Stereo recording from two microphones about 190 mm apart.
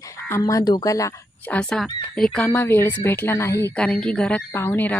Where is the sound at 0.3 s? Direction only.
15° left (ahead or behind).